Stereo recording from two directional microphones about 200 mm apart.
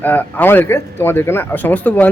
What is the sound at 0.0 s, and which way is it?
Speech, 10° left (ahead or behind).